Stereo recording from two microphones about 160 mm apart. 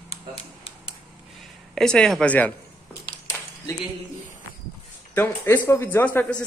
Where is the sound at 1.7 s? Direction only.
5° left (ahead or behind).